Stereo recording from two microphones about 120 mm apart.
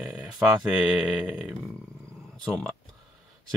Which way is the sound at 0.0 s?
Centre (ahead or behind).